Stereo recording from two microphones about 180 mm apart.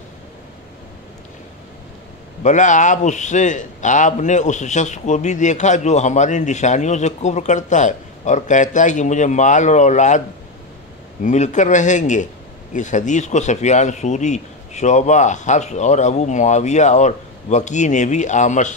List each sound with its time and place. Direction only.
2.4 s a man's voice: 45° left (ahead or behind)
11.2 s a man's voice: 40° left (ahead or behind)